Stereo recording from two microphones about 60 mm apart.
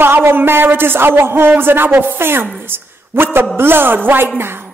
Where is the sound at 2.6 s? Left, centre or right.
Right.